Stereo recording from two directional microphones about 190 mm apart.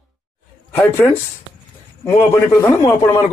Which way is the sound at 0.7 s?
10° left (ahead or behind).